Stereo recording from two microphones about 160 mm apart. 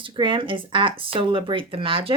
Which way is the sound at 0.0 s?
30° right (ahead or behind).